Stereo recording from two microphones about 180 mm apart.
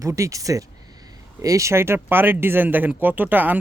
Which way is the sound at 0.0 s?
15° right (ahead or behind).